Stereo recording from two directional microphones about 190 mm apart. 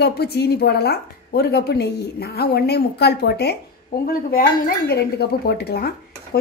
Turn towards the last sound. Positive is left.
turn(degrees=55)  # may be behind; listen again after turning